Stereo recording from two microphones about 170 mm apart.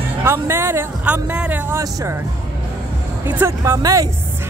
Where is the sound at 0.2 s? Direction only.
15° right (ahead or behind).